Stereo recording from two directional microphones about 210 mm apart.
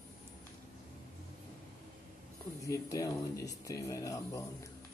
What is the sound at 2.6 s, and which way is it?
Speech, 15° left (ahead or behind).